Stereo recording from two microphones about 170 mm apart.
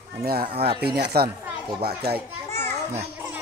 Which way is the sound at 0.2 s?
65° right (ahead or behind).